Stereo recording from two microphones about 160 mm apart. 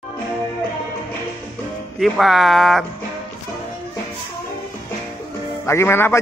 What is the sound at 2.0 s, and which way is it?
Speech, centre (ahead or behind).